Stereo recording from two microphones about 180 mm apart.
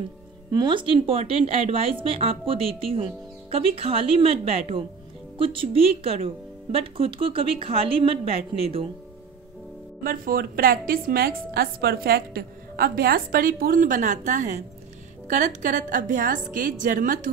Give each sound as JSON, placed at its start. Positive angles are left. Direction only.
{"t": 0.5, "sound": "speech", "side_deg": -25}
{"t": 10.0, "sound": "a woman's voice", "side_deg": -55}